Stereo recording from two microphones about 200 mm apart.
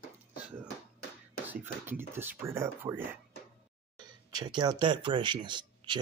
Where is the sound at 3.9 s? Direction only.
20° right (ahead or behind).